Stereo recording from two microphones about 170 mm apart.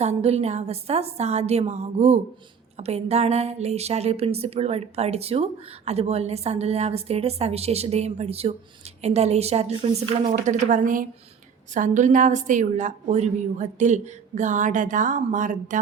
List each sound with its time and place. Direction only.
0.0 s speech: 40° right (ahead or behind)
10.2 s a woman's voice: 45° right (ahead or behind)